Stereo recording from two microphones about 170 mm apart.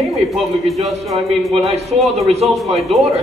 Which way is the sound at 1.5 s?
35° right (ahead or behind).